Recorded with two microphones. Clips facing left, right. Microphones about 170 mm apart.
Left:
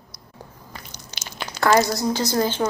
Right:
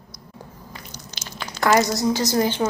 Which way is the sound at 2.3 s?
15° right (ahead or behind).